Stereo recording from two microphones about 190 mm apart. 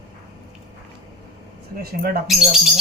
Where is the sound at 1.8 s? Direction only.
55° right (ahead or behind).